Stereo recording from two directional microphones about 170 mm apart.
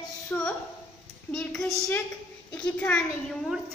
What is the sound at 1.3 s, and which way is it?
Child singing, 5° left (ahead or behind).